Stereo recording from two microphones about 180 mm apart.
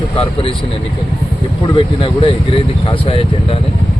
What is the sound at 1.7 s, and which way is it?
Speech, 30° left (ahead or behind).